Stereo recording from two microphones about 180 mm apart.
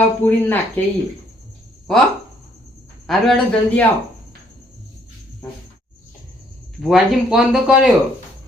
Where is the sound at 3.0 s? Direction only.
5° left (ahead or behind).